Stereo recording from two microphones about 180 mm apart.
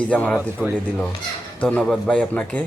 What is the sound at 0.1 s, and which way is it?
Speech, 5° left (ahead or behind).